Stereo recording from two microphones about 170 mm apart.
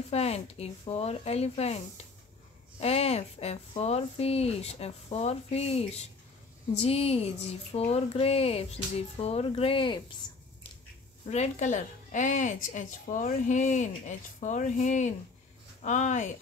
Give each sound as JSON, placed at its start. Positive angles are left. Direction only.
{"t": 0.1, "sound": "speech", "side_deg": 35}
{"t": 2.8, "sound": "speech", "side_deg": 35}
{"t": 11.2, "sound": "a woman's voice", "side_deg": 45}